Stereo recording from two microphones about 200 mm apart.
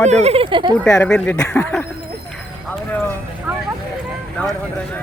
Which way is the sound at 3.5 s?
5° right (ahead or behind).